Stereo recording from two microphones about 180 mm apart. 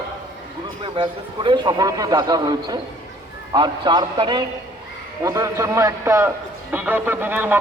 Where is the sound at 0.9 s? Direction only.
25° right (ahead or behind).